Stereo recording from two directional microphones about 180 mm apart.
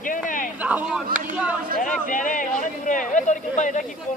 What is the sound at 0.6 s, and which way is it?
Speech, 10° right (ahead or behind).